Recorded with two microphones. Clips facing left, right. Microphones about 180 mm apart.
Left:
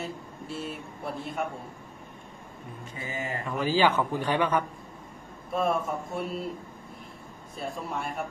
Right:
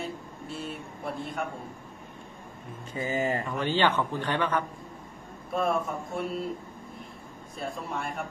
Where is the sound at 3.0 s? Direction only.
35° right (ahead or behind).